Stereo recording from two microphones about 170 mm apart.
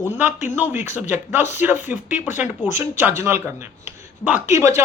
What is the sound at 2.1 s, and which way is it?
Speech, 45° left (ahead or behind).